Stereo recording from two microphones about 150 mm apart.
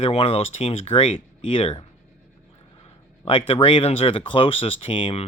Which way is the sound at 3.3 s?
35° left (ahead or behind).